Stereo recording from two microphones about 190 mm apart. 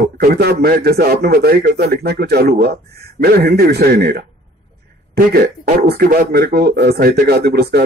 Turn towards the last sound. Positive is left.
turn(degrees=-55)  # may be behind; listen again after turning